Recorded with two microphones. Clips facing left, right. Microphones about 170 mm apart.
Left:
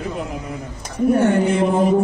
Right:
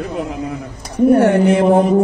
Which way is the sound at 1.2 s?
65° right (ahead or behind).